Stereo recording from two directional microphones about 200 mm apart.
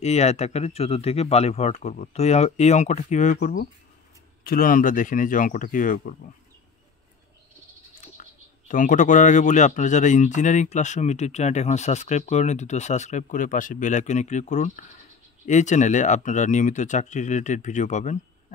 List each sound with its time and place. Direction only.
0.0 s speech: 35° left (ahead or behind)
8.2 s speech: 40° left (ahead or behind)